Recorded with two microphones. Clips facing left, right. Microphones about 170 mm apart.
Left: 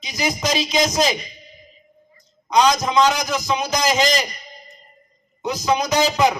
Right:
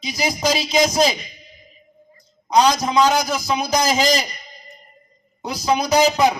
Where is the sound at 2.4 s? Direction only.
35° right (ahead or behind).